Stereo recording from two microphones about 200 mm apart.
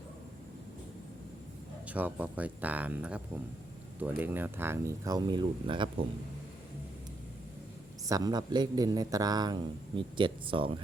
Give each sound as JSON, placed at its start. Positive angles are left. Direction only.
{"t": 1.9, "sound": "speech", "side_deg": -10}
{"t": 8.0, "sound": "a man's voice", "side_deg": -20}